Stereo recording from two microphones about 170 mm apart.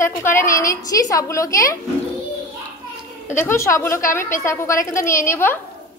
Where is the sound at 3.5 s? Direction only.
15° left (ahead or behind).